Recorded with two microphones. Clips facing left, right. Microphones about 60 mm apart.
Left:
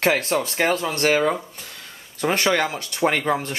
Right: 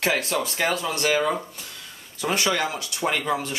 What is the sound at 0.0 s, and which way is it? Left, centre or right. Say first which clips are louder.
Speech: left 4 dB; left.